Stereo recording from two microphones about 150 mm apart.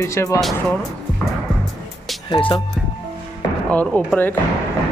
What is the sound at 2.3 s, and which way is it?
Speech, 35° left (ahead or behind).